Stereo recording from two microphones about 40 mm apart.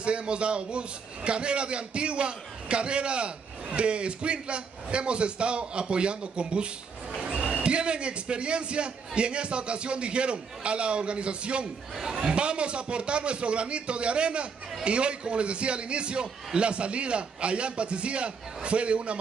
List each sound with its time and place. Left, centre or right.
0.0 s a man's voice: right